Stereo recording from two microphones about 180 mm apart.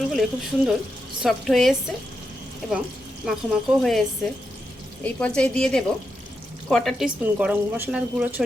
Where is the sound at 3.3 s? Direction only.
Centre (ahead or behind).